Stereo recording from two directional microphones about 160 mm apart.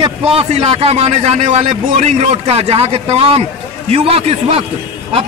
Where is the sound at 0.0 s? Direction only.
35° right (ahead or behind).